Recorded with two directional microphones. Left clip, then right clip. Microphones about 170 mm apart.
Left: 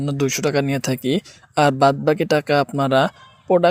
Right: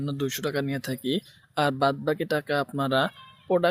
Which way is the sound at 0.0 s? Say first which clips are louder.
Left 9 dB; 35° left (ahead or behind).